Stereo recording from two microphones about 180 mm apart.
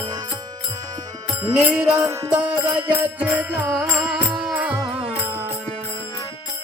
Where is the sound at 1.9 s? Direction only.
20° right (ahead or behind).